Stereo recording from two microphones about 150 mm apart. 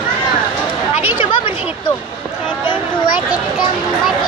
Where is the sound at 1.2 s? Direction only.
35° left (ahead or behind).